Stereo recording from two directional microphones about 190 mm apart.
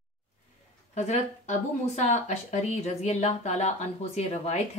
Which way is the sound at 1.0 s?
35° left (ahead or behind).